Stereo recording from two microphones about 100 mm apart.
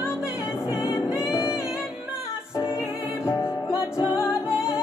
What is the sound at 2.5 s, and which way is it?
Music, 30° left (ahead or behind).